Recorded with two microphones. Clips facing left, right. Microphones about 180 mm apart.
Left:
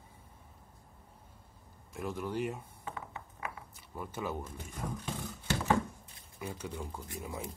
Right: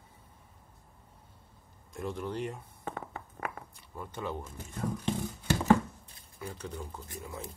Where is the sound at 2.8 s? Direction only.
50° right (ahead or behind).